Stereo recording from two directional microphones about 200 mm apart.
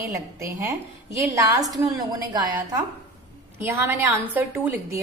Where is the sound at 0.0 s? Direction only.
15° right (ahead or behind).